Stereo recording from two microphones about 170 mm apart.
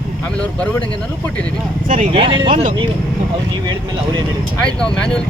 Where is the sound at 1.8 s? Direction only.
50° right (ahead or behind).